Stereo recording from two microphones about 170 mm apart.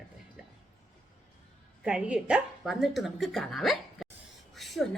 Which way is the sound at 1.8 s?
5° right (ahead or behind).